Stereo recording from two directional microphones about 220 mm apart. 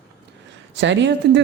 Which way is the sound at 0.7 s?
55° right (ahead or behind).